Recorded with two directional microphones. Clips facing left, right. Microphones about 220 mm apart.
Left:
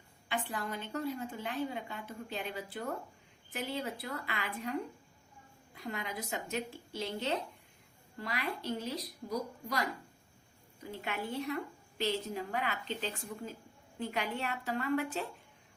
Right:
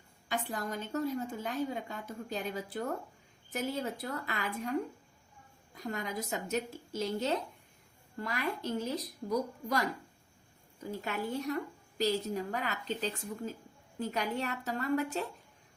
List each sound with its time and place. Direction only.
0.3 s a woman's voice: 40° right (ahead or behind)
10.9 s a woman's voice: 40° right (ahead or behind)